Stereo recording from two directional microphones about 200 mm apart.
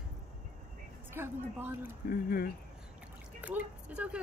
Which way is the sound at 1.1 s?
10° right (ahead or behind).